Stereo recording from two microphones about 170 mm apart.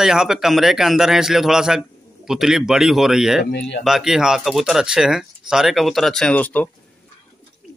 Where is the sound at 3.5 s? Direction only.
90° left.